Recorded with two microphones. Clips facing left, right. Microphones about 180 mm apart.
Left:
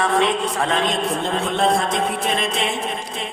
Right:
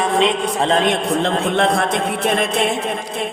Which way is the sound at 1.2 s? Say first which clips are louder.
Right 3 dB; 70° right (ahead or behind).